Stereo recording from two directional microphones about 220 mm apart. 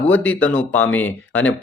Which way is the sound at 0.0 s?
5° left (ahead or behind).